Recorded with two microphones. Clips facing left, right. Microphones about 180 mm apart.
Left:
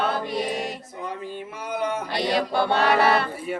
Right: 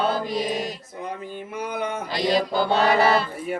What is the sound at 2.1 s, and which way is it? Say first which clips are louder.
Music: right 5 dB; 65° left (ahead or behind).